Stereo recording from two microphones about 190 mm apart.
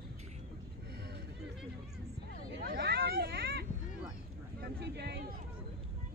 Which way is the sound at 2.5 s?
55° right (ahead or behind).